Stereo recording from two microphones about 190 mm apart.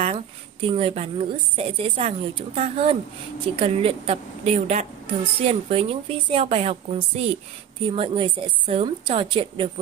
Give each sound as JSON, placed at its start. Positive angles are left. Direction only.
{"t": 0.7, "sound": "a woman's voice", "side_deg": -30}